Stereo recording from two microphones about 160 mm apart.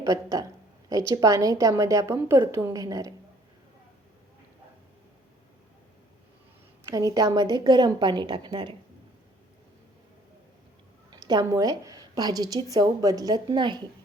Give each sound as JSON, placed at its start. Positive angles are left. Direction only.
{"t": 0.0, "sound": "a woman's voice", "side_deg": -20}
{"t": 6.8, "sound": "a woman's voice", "side_deg": -20}
{"t": 11.1, "sound": "a woman's voice", "side_deg": -30}